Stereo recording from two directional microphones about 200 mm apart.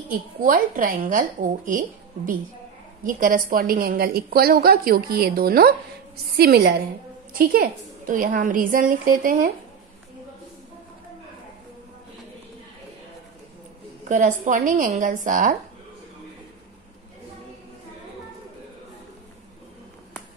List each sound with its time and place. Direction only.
0.4 s a woman's voice: 45° right (ahead or behind)
14.0 s a woman's voice: 40° right (ahead or behind)